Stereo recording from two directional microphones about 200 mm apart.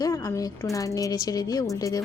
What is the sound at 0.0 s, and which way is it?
Speech, 20° left (ahead or behind).